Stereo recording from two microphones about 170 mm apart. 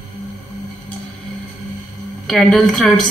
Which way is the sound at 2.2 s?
Centre (ahead or behind).